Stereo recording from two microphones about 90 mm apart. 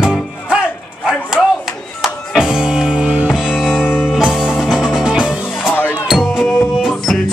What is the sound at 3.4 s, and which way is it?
Music, centre (ahead or behind).